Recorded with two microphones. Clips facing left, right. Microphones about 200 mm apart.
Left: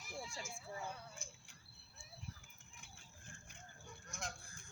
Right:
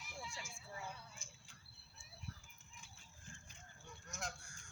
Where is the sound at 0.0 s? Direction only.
40° left (ahead or behind).